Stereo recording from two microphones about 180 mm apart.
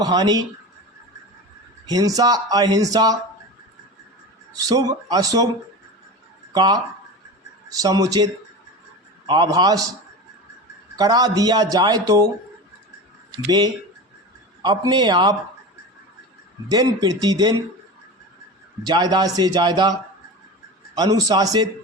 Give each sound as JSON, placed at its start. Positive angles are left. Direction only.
{"t": 0.0, "sound": "speech", "side_deg": -20}
{"t": 1.9, "sound": "speech", "side_deg": -20}
{"t": 4.5, "sound": "speech", "side_deg": -20}
{"t": 6.5, "sound": "speech", "side_deg": -20}
{"t": 10.9, "sound": "speech", "side_deg": -20}
{"t": 13.3, "sound": "speech", "side_deg": -20}
{"t": 16.6, "sound": "speech", "side_deg": -20}
{"t": 18.8, "sound": "speech", "side_deg": -20}